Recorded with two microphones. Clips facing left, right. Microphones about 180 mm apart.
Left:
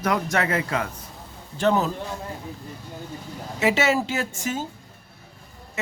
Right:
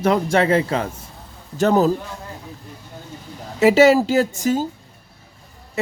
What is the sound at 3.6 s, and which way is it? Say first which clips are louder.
A woman's voice: right 9 dB; 35° right (ahead or behind).